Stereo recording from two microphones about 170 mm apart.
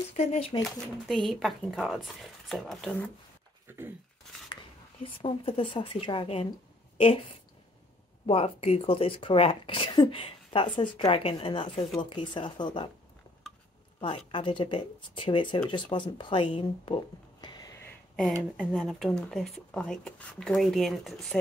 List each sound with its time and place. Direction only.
0.1 s speech: 40° left (ahead or behind)
0.7 s speech: centre (ahead or behind)
3.6 s a sound: 15° right (ahead or behind)
5.2 s speech: 30° left (ahead or behind)
8.3 s speech: 35° left (ahead or behind)
14.0 s speech: 30° left (ahead or behind)
18.6 s speech: 5° left (ahead or behind)